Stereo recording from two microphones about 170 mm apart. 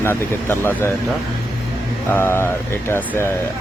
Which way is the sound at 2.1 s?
15° left (ahead or behind).